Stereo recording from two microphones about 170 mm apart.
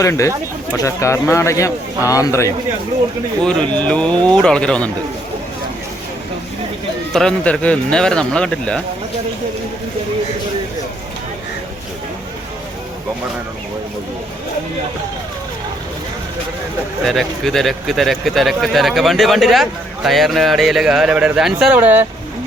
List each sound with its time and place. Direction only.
0.0 s speech: 20° left (ahead or behind)
3.4 s speech: 5° left (ahead or behind)
7.1 s speech: 5° left (ahead or behind)
17.1 s speech: centre (ahead or behind)